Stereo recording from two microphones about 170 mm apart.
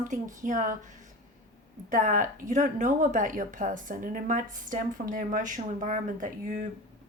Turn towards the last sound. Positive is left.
turn(degrees=-50)  # may be behind; listen again after turning